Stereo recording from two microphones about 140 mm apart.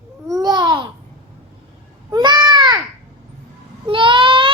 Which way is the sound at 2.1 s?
30° right (ahead or behind).